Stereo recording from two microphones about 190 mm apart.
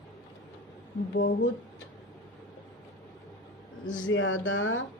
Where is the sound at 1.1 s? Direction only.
70° left (ahead or behind).